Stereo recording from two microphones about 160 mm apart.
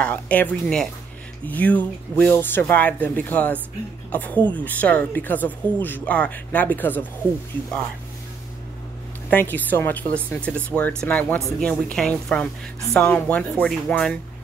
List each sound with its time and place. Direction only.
0.0 s speech: 10° left (ahead or behind)
9.3 s speech: 10° left (ahead or behind)